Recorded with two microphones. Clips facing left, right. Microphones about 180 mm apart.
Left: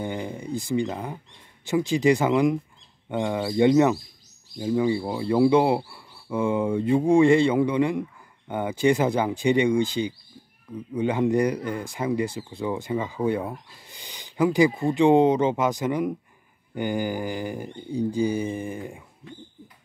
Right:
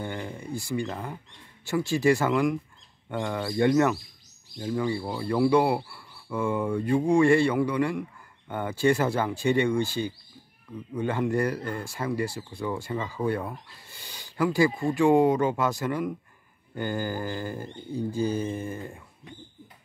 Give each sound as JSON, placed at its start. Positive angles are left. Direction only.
{"t": 0.0, "sound": "speech", "side_deg": 15}